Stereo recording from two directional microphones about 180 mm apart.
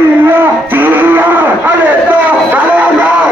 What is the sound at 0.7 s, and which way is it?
Music, 10° right (ahead or behind).